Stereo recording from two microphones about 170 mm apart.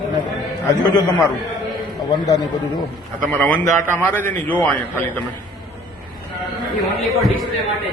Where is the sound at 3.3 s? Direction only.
10° left (ahead or behind).